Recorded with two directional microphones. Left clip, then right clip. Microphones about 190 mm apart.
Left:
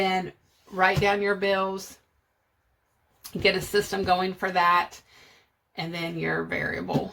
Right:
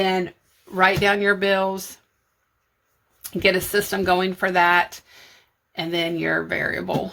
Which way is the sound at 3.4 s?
40° right (ahead or behind).